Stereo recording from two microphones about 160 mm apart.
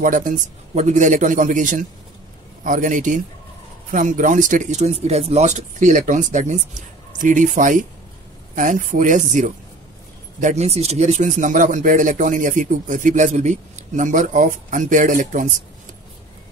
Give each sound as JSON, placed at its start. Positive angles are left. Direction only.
{"t": 0.0, "sound": "speech", "side_deg": -55}